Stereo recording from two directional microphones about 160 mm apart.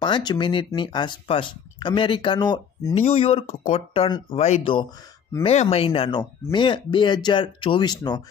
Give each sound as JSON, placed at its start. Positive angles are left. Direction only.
{"t": 0.0, "sound": "speech", "side_deg": 25}
{"t": 2.9, "sound": "speech", "side_deg": 40}